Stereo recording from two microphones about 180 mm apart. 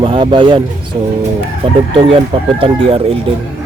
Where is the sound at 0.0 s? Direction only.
30° right (ahead or behind).